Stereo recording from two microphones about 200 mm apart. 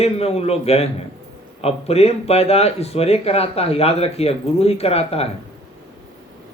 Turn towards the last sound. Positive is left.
turn(degrees=30)  # may be behind; listen again after turning